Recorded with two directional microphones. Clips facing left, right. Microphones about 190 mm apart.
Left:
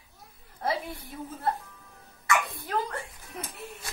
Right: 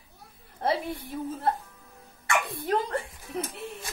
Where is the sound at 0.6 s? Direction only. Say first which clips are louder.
Right 3 dB; 30° right (ahead or behind).